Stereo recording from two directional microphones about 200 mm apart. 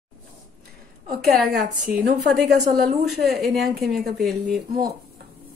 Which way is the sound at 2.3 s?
Centre (ahead or behind).